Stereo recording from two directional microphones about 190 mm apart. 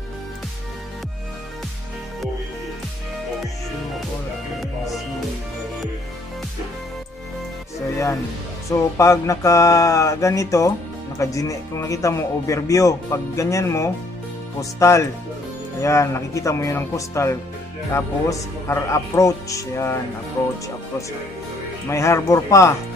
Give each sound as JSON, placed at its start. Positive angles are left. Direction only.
{"t": 4.6, "sound": "music", "side_deg": 0}
{"t": 8.6, "sound": "speech", "side_deg": 15}
{"t": 21.8, "sound": "speech", "side_deg": 15}